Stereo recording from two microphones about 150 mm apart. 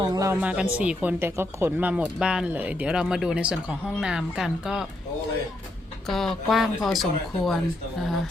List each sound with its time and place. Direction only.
0.0 s speech: 25° right (ahead or behind)
0.3 s speech: 10° right (ahead or behind)
6.1 s speech: centre (ahead or behind)